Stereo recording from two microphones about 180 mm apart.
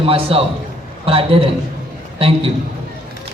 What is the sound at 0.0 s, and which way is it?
A woman's voice, 30° right (ahead or behind).